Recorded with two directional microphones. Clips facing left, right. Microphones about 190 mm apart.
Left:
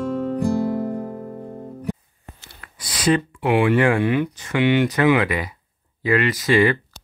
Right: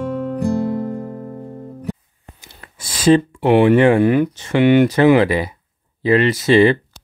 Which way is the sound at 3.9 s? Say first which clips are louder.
Right 6 dB; 40° right (ahead or behind).